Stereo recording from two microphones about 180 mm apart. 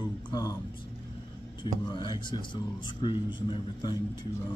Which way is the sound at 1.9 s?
25° left (ahead or behind).